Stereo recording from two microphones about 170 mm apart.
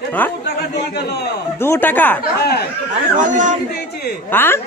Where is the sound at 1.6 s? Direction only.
10° left (ahead or behind).